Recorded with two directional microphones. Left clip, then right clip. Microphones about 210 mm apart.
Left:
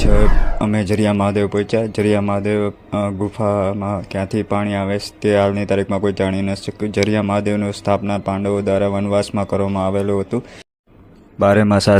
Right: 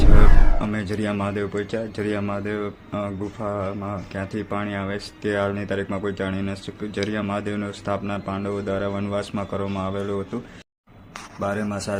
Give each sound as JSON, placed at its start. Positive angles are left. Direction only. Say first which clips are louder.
{"t": 0.2, "sound": "speech", "louder": "left 5 dB", "side_deg": 30}
{"t": 11.3, "sound": "a man's voice", "louder": "left 13 dB", "side_deg": 35}